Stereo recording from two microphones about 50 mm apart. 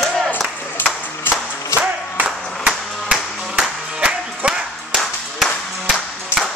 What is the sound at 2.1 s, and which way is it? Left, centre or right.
Music, right.